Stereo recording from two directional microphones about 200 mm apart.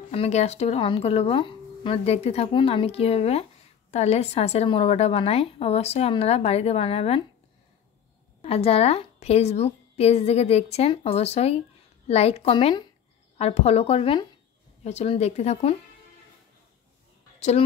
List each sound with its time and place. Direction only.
0.1 s a woman's voice: 30° left (ahead or behind)
8.4 s a woman's voice: 30° left (ahead or behind)